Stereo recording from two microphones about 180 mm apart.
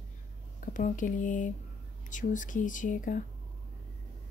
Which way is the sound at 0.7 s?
45° left (ahead or behind).